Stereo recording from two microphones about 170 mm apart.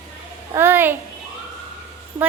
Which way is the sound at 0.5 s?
15° right (ahead or behind).